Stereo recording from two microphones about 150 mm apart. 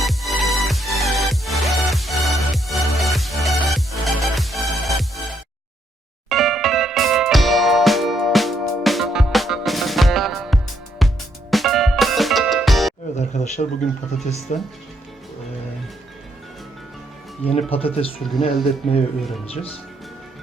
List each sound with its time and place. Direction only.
0.0 s music: centre (ahead or behind)
6.2 s music: centre (ahead or behind)
13.1 s a sound: 50° left (ahead or behind)
14.3 s speech: 50° left (ahead or behind)
17.4 s speech: 40° left (ahead or behind)